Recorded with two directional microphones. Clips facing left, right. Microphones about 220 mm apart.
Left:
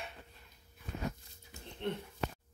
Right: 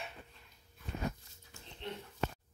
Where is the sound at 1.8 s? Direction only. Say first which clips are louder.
Left 6 dB; 55° left (ahead or behind).